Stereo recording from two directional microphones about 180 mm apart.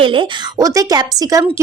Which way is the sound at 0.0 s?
30° right (ahead or behind).